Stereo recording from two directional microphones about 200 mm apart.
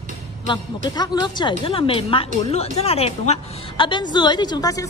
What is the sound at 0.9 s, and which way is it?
A woman's voice, 20° left (ahead or behind).